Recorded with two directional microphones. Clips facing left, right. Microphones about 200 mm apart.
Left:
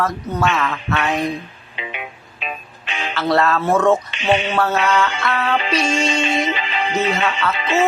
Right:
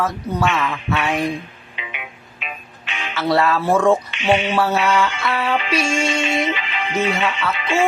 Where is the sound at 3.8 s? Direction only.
10° right (ahead or behind).